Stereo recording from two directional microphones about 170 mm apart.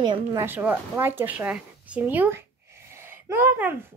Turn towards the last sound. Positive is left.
turn(degrees=-10)  # may be behind; listen again after turning